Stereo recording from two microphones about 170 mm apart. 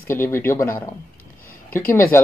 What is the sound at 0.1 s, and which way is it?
Speech, 15° left (ahead or behind).